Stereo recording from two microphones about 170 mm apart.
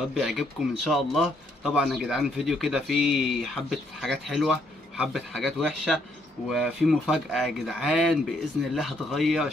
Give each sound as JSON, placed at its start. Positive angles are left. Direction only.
{"t": 0.1, "sound": "speech", "side_deg": 0}